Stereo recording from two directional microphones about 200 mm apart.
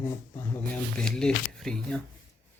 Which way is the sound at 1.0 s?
5° left (ahead or behind).